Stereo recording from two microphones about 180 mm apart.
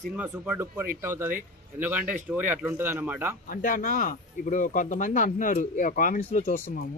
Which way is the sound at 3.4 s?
45° left (ahead or behind).